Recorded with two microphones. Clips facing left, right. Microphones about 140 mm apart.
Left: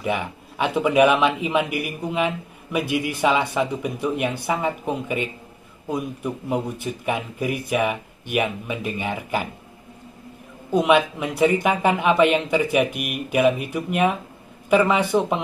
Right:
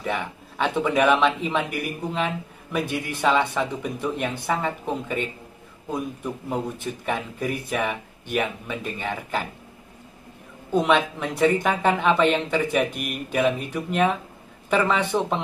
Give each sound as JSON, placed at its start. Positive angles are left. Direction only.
{"t": 0.0, "sound": "speech", "side_deg": 10}
{"t": 10.7, "sound": "speech", "side_deg": 10}